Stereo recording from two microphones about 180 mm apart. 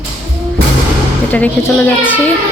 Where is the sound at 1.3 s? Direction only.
10° left (ahead or behind).